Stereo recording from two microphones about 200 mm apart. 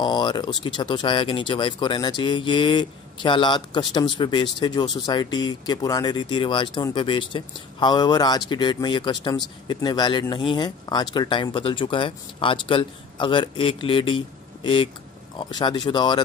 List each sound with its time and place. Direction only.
0.0 s speech: 20° left (ahead or behind)